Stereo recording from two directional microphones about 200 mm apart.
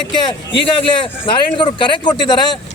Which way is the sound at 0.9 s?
25° left (ahead or behind).